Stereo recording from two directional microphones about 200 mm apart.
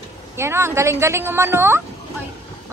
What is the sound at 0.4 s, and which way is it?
A woman's voice, 10° right (ahead or behind).